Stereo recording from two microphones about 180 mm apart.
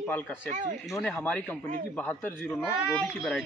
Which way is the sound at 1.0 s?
10° left (ahead or behind).